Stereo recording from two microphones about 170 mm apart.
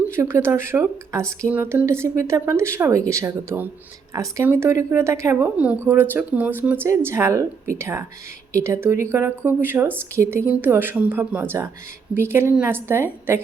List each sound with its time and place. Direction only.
0.0 s speech: 15° right (ahead or behind)